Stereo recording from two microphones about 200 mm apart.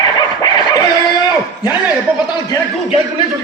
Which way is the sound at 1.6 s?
20° left (ahead or behind).